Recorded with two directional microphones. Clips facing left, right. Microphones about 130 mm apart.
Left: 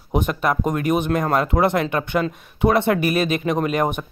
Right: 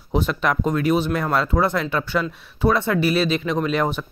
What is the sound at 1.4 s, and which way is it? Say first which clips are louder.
Speech: left 2 dB; 60° left (ahead or behind).